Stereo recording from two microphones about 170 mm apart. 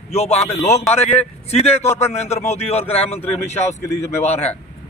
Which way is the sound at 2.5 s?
40° left (ahead or behind).